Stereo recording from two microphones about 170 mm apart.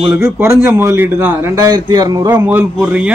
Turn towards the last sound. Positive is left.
turn(degrees=-5)  # may be behind; listen again after turning